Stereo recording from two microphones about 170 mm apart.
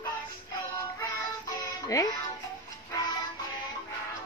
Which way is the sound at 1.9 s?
20° left (ahead or behind).